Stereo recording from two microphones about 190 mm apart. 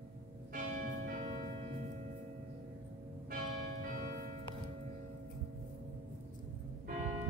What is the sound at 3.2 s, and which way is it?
Change ringing, 50° right (ahead or behind).